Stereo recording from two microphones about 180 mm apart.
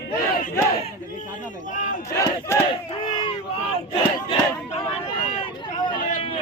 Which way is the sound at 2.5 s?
15° left (ahead or behind).